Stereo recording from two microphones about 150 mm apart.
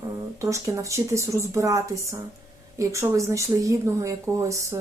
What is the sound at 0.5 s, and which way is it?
A woman's voice, 20° right (ahead or behind).